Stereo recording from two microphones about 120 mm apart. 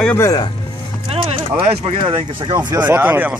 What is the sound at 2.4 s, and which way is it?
Speech, 35° right (ahead or behind).